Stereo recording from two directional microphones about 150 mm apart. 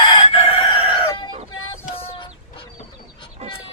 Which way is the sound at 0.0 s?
40° left (ahead or behind).